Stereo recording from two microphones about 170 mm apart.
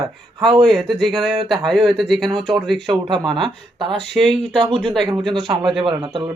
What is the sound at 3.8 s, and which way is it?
Speech, 30° right (ahead or behind).